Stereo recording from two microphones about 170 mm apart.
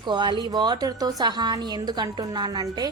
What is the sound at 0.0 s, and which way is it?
A woman's voice, 25° right (ahead or behind).